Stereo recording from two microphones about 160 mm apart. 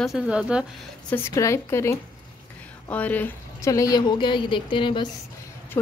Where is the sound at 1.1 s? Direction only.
15° left (ahead or behind).